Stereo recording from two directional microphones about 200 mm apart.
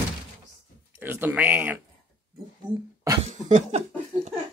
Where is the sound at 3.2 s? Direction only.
35° right (ahead or behind).